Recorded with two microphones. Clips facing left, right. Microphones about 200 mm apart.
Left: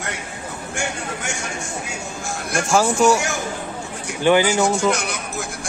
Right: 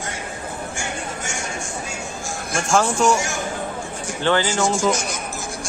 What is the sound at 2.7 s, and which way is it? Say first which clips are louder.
Speech: left 2 dB; 5° left (ahead or behind).